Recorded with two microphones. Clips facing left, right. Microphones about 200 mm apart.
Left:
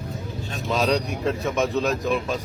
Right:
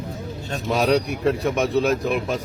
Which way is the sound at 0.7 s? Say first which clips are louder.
Right 3 dB; 10° right (ahead or behind).